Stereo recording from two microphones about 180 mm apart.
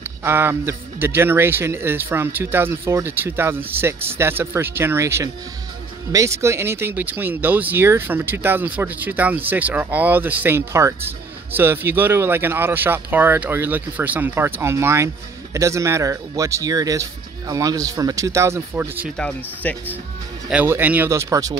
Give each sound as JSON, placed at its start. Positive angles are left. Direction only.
{"t": 0.2, "sound": "speech", "side_deg": -15}
{"t": 19.1, "sound": "speech", "side_deg": 5}
{"t": 20.4, "sound": "speech", "side_deg": -10}